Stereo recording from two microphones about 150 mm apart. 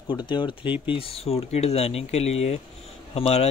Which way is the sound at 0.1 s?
30° left (ahead or behind).